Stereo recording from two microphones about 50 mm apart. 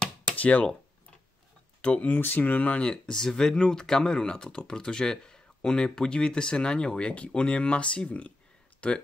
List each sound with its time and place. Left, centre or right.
0.4 s speech: left
1.8 s speech: left
2.0 s speech: left
3.2 s speech: centre